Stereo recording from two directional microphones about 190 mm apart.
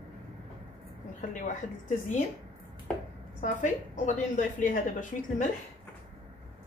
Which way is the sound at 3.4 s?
40° left (ahead or behind).